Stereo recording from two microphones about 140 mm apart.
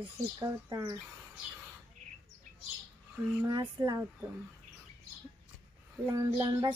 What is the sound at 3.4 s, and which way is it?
Speech, 30° right (ahead or behind).